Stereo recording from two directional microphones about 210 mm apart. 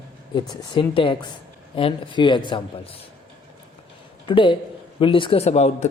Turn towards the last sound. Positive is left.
turn(degrees=30)  # may be behind; listen again after turning